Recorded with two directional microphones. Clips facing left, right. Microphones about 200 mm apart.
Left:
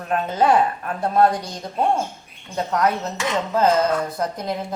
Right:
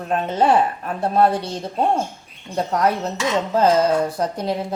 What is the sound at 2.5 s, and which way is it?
A woman's voice, 35° right (ahead or behind).